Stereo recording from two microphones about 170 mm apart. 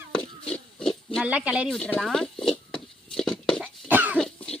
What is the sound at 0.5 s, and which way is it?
Pig, 5° left (ahead or behind).